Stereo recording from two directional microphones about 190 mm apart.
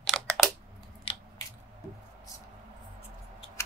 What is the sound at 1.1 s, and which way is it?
Biting, 30° left (ahead or behind).